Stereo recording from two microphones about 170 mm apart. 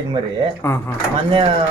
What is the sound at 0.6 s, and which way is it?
Speech, 15° left (ahead or behind).